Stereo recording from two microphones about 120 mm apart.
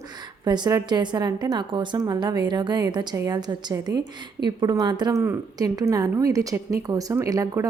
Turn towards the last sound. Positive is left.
turn(degrees=-30)  # may be behind; listen again after turning